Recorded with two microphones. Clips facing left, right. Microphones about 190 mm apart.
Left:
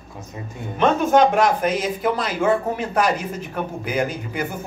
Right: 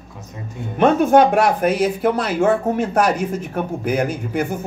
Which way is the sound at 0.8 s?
60° right (ahead or behind).